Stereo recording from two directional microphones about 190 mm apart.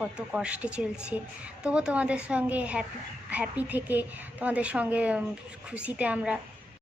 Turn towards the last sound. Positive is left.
turn(degrees=-5)  # may be behind; listen again after turning